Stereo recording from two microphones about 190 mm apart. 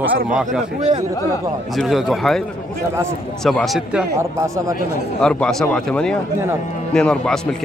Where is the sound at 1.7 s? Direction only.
Centre (ahead or behind).